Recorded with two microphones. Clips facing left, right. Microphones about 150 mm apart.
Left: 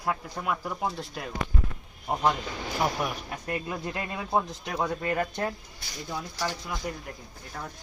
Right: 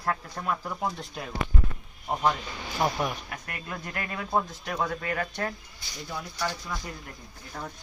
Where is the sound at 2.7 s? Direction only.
5° left (ahead or behind).